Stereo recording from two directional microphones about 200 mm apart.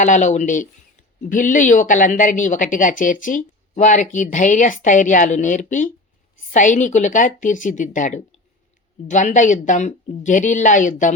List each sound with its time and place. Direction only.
0.0 s a woman's voice: 35° left (ahead or behind)